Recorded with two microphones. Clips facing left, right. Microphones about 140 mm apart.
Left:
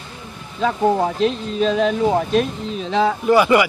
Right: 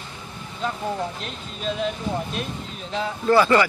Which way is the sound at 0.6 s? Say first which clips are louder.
Left 10 dB; 90° left.